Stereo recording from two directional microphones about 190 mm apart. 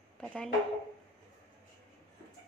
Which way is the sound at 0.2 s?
5° left (ahead or behind).